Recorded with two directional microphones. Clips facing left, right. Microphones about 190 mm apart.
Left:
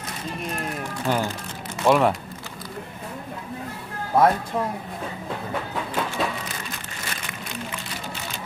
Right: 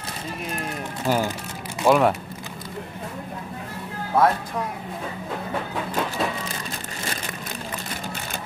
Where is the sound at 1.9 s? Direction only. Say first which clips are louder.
Right 1 dB; centre (ahead or behind).